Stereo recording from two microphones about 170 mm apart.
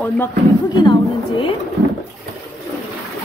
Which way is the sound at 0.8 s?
30° left (ahead or behind).